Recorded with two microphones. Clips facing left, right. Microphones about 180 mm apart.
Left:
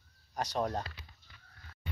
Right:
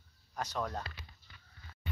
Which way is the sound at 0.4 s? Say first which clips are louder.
Left 4 dB; 35° left (ahead or behind).